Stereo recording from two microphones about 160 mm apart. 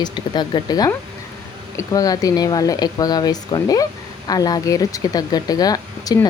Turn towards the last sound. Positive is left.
turn(degrees=25)  # may be behind; listen again after turning